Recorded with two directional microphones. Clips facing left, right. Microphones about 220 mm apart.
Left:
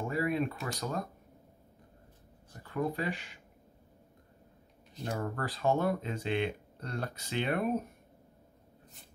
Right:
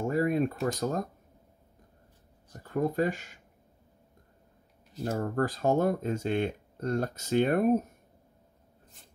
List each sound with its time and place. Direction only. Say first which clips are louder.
0.0 s a sound: right 5 dB; 45° right (ahead or behind)
2.6 s speech: right 6 dB; 45° right (ahead or behind)
5.0 s speech: right 6 dB; 40° right (ahead or behind)